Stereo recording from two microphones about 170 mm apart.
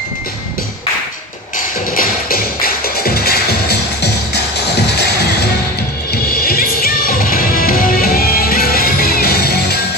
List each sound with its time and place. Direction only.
2.0 s music: 60° left (ahead or behind); by 4.4 s 75° left (ahead or behind)
6.2 s music: 60° left (ahead or behind)